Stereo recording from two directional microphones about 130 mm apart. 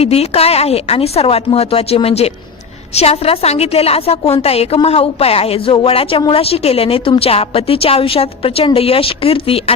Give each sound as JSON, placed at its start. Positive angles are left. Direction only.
{"t": 0.0, "sound": "a woman's voice", "side_deg": 50}